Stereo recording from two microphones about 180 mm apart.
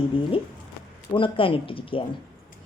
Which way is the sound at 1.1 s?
30° left (ahead or behind).